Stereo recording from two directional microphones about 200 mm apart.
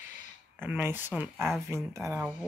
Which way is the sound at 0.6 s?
10° right (ahead or behind).